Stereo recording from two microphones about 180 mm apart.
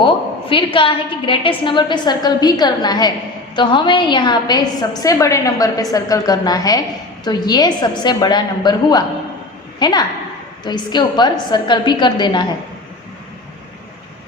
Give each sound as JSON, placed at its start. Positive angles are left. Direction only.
{"t": 0.0, "sound": "a woman's voice", "side_deg": 30}